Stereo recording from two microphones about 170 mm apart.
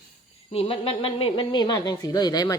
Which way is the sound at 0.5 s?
35° left (ahead or behind).